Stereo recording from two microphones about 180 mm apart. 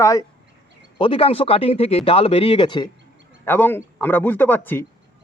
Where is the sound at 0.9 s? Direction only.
30° left (ahead or behind).